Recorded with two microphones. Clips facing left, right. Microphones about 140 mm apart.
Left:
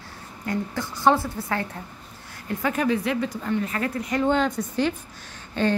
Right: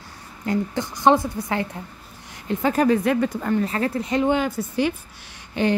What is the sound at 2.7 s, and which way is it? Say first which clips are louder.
Speech: right 5 dB; 45° right (ahead or behind).